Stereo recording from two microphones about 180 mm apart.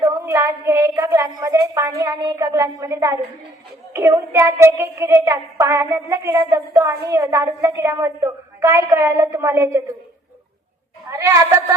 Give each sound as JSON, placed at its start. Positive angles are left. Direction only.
{"t": 0.0, "sound": "a sound", "side_deg": -15}
{"t": 1.4, "sound": "a woman's voice", "side_deg": -20}
{"t": 11.1, "sound": "a woman's voice", "side_deg": -20}